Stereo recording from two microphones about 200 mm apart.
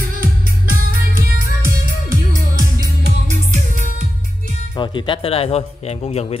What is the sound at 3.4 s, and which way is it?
Music, 40° right (ahead or behind).